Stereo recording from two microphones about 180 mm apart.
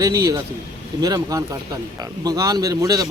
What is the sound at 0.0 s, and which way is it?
A man's voice, 20° right (ahead or behind).